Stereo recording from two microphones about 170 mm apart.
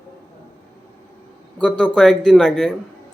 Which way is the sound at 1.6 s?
5° left (ahead or behind).